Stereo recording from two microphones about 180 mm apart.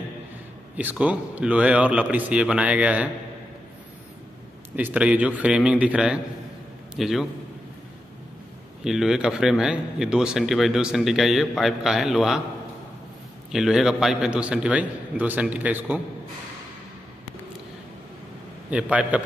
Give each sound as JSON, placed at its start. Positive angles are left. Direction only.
{"t": 0.7, "sound": "a man's voice", "side_deg": -5}
{"t": 4.7, "sound": "a man's voice", "side_deg": -5}
{"t": 8.8, "sound": "a man's voice", "side_deg": 0}
{"t": 13.5, "sound": "a man's voice", "side_deg": 0}
{"t": 18.7, "sound": "a man's voice", "side_deg": -5}